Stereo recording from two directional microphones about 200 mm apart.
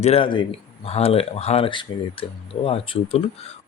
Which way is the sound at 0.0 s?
30° left (ahead or behind).